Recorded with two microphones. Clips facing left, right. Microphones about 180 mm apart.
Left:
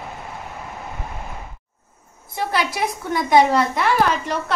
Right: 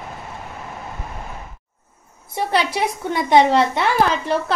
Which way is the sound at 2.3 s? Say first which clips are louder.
Right 3 dB; 25° right (ahead or behind).